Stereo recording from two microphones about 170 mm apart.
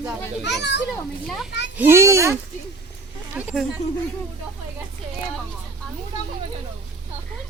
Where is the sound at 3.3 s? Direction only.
5° right (ahead or behind).